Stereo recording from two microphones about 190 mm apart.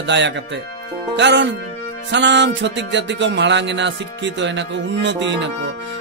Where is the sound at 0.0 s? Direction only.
65° right (ahead or behind).